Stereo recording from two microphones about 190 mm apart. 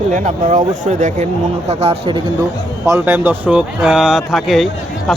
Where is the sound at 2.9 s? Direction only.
10° right (ahead or behind).